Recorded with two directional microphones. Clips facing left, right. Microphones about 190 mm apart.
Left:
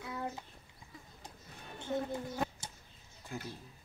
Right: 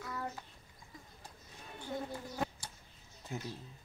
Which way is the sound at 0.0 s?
20° left (ahead or behind).